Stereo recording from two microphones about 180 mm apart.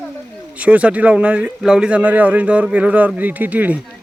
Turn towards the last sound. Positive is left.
turn(degrees=-10)  # may be behind; listen again after turning